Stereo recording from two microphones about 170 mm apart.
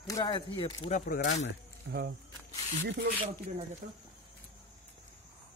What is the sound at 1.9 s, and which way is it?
Speech, 90° right.